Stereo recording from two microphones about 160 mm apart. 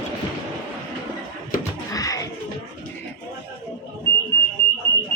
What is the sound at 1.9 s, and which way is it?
Music, 20° left (ahead or behind).